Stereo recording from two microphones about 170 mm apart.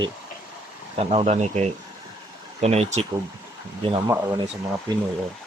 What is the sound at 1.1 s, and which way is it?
Speech, 40° right (ahead or behind).